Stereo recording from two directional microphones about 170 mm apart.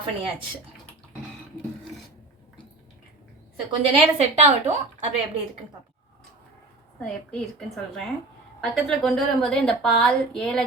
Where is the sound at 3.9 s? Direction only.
40° right (ahead or behind).